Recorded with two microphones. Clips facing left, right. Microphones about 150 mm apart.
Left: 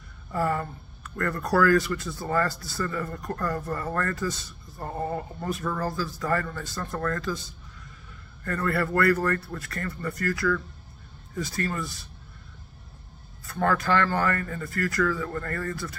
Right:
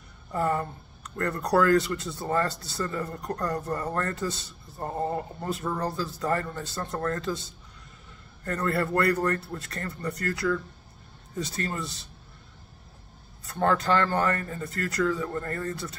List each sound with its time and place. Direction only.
0.3 s speech: 20° right (ahead or behind)
8.6 s speech: 25° right (ahead or behind)
13.5 s speech: 25° right (ahead or behind)